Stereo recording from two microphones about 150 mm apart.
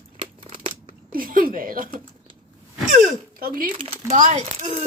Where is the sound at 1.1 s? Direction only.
70° right (ahead or behind).